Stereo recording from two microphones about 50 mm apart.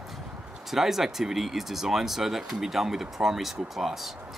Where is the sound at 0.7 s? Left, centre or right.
Centre.